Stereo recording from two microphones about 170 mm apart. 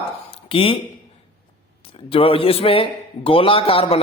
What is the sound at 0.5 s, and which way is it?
Speech, 30° left (ahead or behind).